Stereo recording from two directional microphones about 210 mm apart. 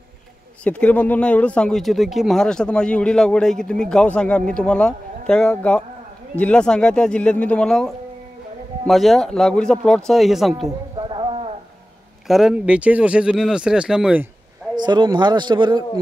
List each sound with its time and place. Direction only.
0.7 s speech: 5° left (ahead or behind)
11.0 s a sound: 25° right (ahead or behind)
12.3 s speech: centre (ahead or behind)
14.8 s a man's voice: 20° right (ahead or behind)